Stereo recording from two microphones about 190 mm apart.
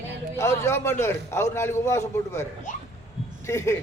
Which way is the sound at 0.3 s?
15° left (ahead or behind).